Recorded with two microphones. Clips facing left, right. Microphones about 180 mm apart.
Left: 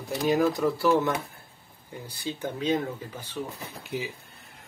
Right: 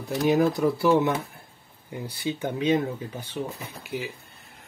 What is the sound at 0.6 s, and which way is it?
Speech, 15° right (ahead or behind).